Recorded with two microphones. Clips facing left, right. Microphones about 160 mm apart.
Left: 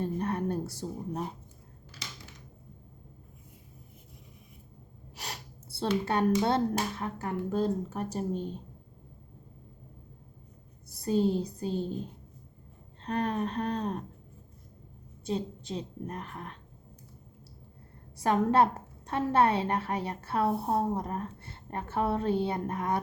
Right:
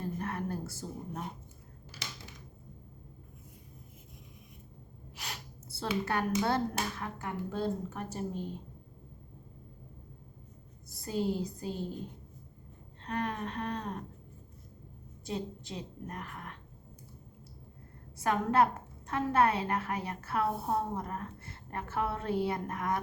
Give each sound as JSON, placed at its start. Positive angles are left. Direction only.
{"t": 0.0, "sound": "a sound", "side_deg": 25}
{"t": 5.1, "sound": "a sound", "side_deg": 35}
{"t": 6.1, "sound": "a woman's voice", "side_deg": 25}
{"t": 11.0, "sound": "a woman's voice", "side_deg": 30}
{"t": 13.0, "sound": "a woman's voice", "side_deg": 35}
{"t": 15.3, "sound": "a woman's voice", "side_deg": 30}
{"t": 18.2, "sound": "a woman's voice", "side_deg": 30}